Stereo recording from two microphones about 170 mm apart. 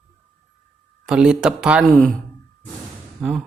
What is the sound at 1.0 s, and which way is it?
Speech, 5° right (ahead or behind).